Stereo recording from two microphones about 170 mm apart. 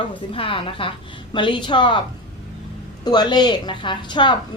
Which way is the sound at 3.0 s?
25° left (ahead or behind).